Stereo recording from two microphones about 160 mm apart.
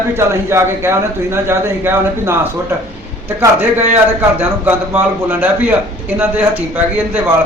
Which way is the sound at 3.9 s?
10° right (ahead or behind).